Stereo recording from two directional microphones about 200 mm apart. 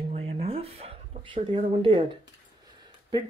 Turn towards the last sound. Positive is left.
turn(degrees=-25)  # may be behind; listen again after turning